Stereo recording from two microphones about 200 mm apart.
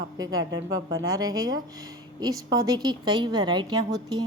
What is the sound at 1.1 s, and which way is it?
A woman's voice, 20° right (ahead or behind).